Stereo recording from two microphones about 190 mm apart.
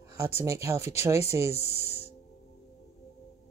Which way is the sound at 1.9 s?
35° left (ahead or behind).